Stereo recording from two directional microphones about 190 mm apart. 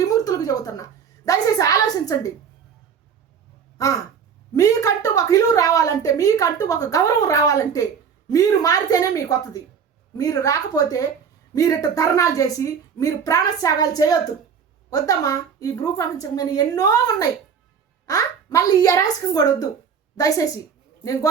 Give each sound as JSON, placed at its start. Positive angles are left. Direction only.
{"t": 0.0, "sound": "a woman's voice", "side_deg": 20}
{"t": 3.8, "sound": "caw", "side_deg": 20}
{"t": 4.5, "sound": "a woman's voice", "side_deg": 15}